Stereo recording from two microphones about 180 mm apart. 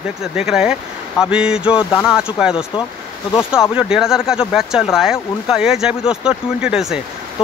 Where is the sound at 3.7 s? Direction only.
5° right (ahead or behind).